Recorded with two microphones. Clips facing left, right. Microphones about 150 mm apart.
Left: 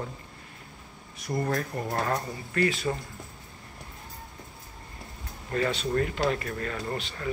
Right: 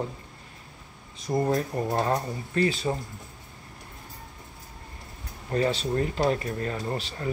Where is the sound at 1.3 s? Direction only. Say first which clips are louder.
Right 4 dB; 25° right (ahead or behind).